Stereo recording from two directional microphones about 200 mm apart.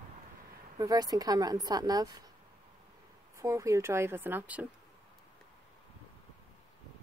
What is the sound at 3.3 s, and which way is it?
A woman's voice, 15° right (ahead or behind).